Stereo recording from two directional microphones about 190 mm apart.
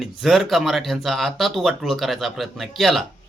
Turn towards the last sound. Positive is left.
turn(degrees=0)  # may be behind; listen again after turning